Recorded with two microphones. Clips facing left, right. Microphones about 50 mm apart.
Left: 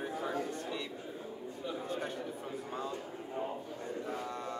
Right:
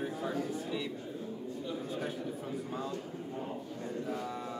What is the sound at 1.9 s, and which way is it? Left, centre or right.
Speech, centre.